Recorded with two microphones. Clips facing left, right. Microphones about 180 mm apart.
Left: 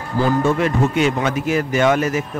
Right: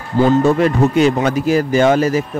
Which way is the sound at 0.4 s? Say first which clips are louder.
Right 4 dB; 35° right (ahead or behind).